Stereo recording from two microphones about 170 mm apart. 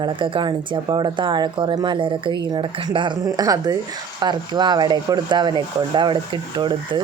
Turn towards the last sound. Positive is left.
turn(degrees=-30)  # may be behind; listen again after turning